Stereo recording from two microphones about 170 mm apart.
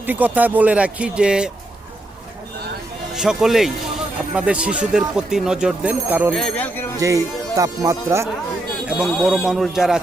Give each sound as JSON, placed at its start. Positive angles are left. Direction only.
{"t": 0.0, "sound": "speech", "side_deg": -10}
{"t": 3.2, "sound": "speech", "side_deg": 0}
{"t": 6.3, "sound": "speech", "side_deg": 0}
{"t": 7.0, "sound": "speech", "side_deg": -20}
{"t": 9.0, "sound": "speech", "side_deg": 0}